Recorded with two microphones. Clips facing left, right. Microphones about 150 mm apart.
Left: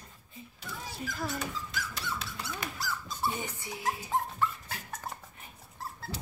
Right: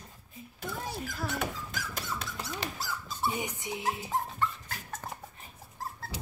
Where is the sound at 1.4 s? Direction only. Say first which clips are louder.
Right 2 dB; 50° right (ahead or behind).